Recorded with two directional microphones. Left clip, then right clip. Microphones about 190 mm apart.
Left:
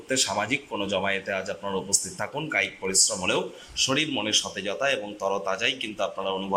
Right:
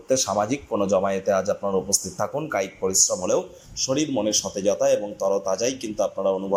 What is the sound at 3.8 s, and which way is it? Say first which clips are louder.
Speech: right 4 dB; 20° right (ahead or behind).